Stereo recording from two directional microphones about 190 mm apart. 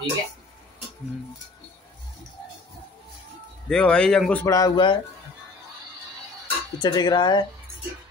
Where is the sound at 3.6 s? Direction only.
5° left (ahead or behind); by 4.9 s 20° left (ahead or behind).